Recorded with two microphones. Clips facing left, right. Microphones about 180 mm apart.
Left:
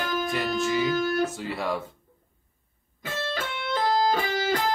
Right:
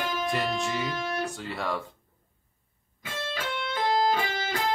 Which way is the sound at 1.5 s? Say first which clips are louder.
Left 2 dB; centre (ahead or behind).